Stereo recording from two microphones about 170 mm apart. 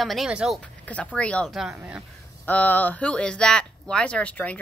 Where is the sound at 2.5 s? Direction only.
10° left (ahead or behind).